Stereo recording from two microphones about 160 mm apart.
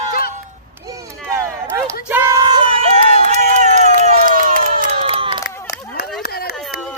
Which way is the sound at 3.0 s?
50° right (ahead or behind).